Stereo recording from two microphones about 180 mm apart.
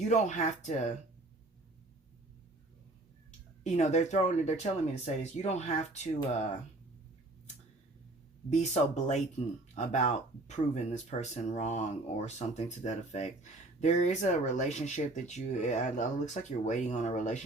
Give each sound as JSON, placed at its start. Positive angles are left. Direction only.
{"t": 0.1, "sound": "speech", "side_deg": 40}
{"t": 3.6, "sound": "speech", "side_deg": 40}
{"t": 8.4, "sound": "speech", "side_deg": 40}